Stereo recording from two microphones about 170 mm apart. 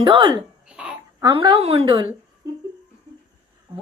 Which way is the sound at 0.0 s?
30° right (ahead or behind).